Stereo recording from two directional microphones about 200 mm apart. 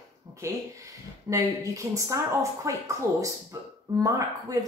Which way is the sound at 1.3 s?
15° right (ahead or behind).